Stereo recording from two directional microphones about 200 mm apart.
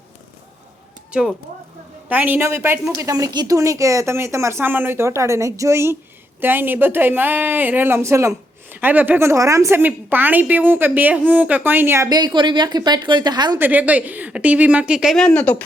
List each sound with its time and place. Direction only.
2.0 s speech: 10° right (ahead or behind)
13.6 s speech: 10° right (ahead or behind)